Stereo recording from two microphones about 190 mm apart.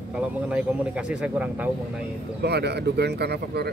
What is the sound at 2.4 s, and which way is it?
Speech, 60° right (ahead or behind).